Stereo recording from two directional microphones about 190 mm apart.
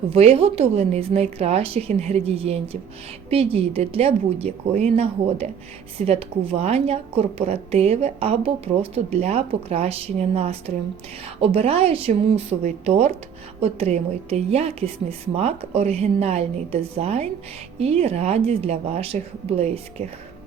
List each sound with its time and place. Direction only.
0.1 s speech: 30° right (ahead or behind)